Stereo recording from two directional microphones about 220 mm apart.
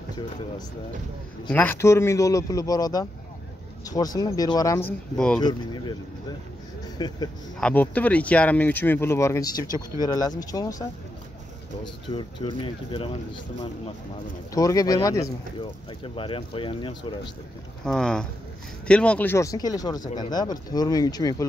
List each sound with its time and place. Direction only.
1.5 s speech: 10° left (ahead or behind)
5.4 s speech: 20° left (ahead or behind)
7.0 s speech: 20° left (ahead or behind)
7.6 s speech: 5° left (ahead or behind)
14.5 s speech: 15° left (ahead or behind)
17.8 s speech: 5° left (ahead or behind)